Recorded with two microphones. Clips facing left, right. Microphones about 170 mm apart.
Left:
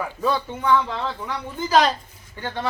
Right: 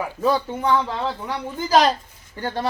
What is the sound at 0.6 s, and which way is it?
Speech, 35° right (ahead or behind).